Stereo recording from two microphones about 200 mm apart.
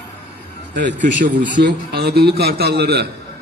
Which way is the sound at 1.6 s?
55° right (ahead or behind).